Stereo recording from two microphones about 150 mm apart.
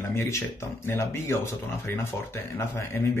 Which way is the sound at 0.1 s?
15° left (ahead or behind).